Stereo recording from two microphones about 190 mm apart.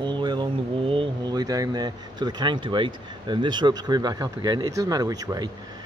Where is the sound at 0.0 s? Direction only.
25° right (ahead or behind).